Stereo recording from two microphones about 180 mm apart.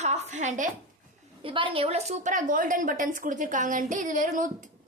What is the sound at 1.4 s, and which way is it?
A woman's voice, 30° right (ahead or behind).